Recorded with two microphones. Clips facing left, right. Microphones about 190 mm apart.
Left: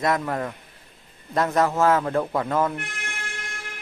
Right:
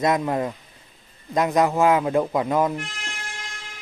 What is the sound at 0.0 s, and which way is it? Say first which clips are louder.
Speech: right 3 dB; 20° right (ahead or behind).